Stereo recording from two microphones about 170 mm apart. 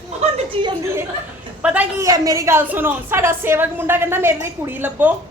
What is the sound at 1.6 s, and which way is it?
Speech, 10° right (ahead or behind).